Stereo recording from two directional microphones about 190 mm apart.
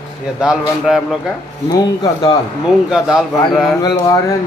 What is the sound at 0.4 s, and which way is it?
Speech, 5° right (ahead or behind).